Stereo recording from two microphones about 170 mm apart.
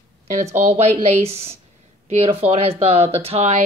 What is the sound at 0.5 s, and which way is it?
Speech, 40° right (ahead or behind).